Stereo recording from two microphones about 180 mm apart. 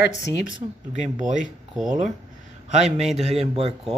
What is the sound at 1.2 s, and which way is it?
Speech, 45° right (ahead or behind).